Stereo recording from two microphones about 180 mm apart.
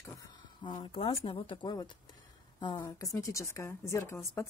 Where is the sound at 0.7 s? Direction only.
25° left (ahead or behind).